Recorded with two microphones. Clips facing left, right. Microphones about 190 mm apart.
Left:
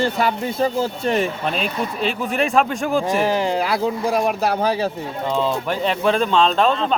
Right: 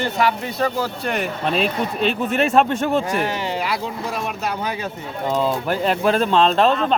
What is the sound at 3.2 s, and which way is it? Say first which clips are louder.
Speech: left 4 dB; 35° left (ahead or behind).